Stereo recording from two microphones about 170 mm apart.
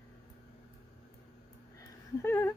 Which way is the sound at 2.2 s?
15° left (ahead or behind).